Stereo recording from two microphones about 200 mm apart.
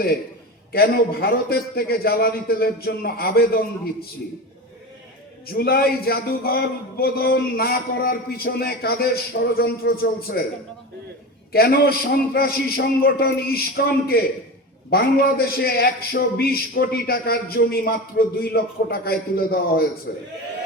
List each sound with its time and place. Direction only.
0.7 s a man's voice: 50° left (ahead or behind)
5.5 s a man's voice: 50° left (ahead or behind)
11.5 s a man's voice: 50° left (ahead or behind)